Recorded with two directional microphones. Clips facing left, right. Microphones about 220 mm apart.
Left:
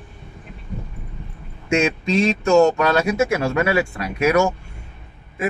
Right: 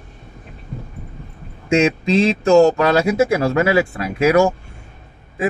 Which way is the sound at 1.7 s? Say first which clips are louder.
Right 4 dB; 30° right (ahead or behind).